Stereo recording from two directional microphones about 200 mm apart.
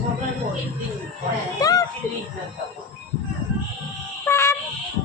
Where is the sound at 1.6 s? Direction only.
15° left (ahead or behind).